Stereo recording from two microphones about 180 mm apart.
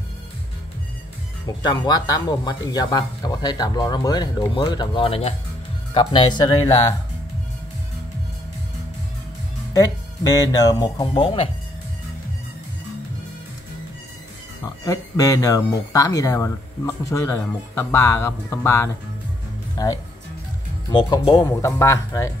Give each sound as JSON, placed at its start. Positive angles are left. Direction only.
{"t": 1.6, "sound": "speech", "side_deg": 25}
{"t": 9.8, "sound": "speech", "side_deg": 20}
{"t": 11.0, "sound": "speech", "side_deg": 30}
{"t": 14.6, "sound": "speech", "side_deg": 20}
{"t": 20.9, "sound": "speech", "side_deg": 25}